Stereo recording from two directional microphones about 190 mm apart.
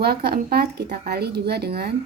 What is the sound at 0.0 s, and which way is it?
Speech, 55° right (ahead or behind).